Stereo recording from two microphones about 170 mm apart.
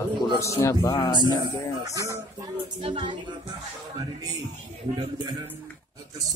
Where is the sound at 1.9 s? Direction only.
20° right (ahead or behind).